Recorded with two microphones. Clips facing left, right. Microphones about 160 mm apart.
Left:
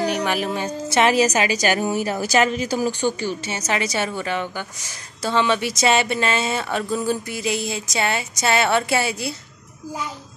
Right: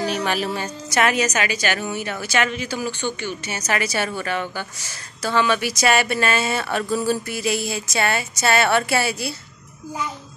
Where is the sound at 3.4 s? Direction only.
20° left (ahead or behind).